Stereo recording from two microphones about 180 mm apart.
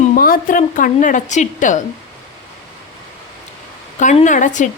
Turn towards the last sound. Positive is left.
turn(degrees=45)  # may be behind; listen again after turning